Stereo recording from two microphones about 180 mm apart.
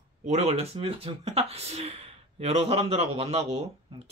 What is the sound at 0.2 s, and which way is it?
Speech, 40° right (ahead or behind).